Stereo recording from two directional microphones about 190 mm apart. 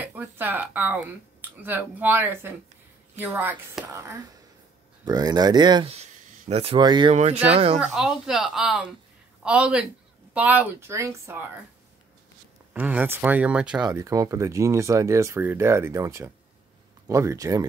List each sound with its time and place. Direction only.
0.0 s speech: 10° right (ahead or behind)
5.9 s speech: 35° right (ahead or behind)
7.8 s a man's voice: centre (ahead or behind)
12.7 s speech: 10° right (ahead or behind)
13.8 s speech: 15° right (ahead or behind)